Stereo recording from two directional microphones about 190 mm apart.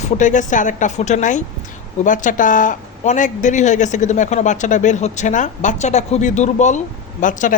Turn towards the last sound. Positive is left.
turn(degrees=40)  # may be behind; listen again after turning